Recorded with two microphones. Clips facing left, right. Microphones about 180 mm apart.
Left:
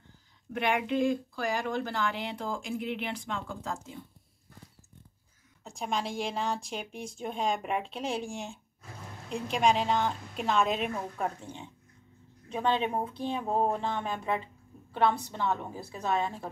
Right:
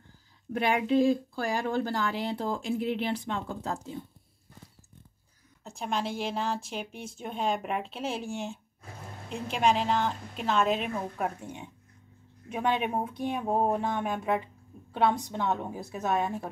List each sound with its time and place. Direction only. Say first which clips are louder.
0.5 s speech: right 3 dB; 35° right (ahead or behind)
5.6 s speech: right 1 dB; centre (ahead or behind)